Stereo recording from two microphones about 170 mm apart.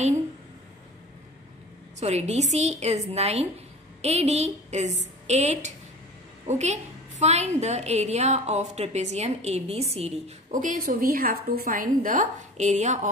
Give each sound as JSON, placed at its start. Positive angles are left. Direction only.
{"t": 2.0, "sound": "a woman's voice", "side_deg": -40}